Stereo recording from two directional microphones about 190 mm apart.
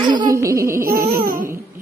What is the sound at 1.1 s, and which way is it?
Speech, 45° right (ahead or behind).